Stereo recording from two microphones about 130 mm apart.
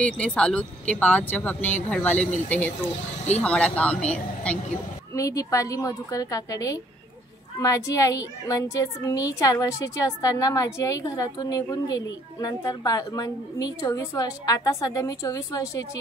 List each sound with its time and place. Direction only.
0.0 s speech: 10° left (ahead or behind)
2.8 s speech: 55° left (ahead or behind)
3.4 s speech: 10° left (ahead or behind)
5.1 s a child's voice: 25° left (ahead or behind)